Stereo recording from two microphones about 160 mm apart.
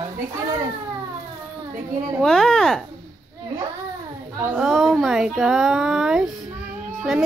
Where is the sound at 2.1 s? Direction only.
5° left (ahead or behind).